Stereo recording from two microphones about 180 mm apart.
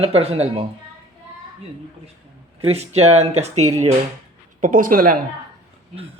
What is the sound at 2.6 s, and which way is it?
Speech, 35° right (ahead or behind).